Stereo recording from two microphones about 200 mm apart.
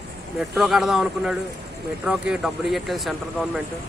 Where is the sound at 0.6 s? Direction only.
Centre (ahead or behind).